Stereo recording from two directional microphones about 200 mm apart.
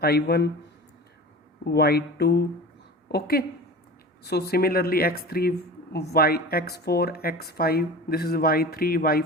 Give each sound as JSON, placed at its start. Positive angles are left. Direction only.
{"t": 0.0, "sound": "speech", "side_deg": 55}
{"t": 1.6, "sound": "speech", "side_deg": 55}